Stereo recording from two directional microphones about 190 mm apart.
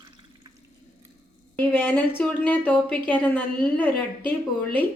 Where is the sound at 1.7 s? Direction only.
10° left (ahead or behind).